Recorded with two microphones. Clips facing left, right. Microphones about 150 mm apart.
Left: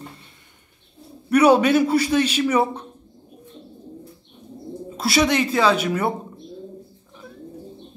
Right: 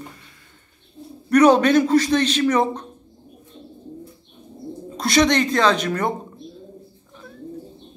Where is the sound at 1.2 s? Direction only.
10° left (ahead or behind).